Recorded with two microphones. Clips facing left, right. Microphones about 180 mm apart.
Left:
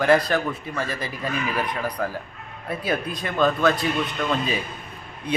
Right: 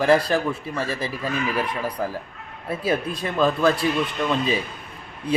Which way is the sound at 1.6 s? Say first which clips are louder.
Even; 30° right (ahead or behind).